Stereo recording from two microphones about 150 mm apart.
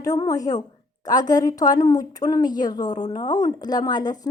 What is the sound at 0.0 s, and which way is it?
A woman's voice, 25° left (ahead or behind).